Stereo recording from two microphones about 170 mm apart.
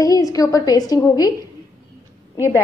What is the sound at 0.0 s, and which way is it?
A woman's voice, 20° left (ahead or behind).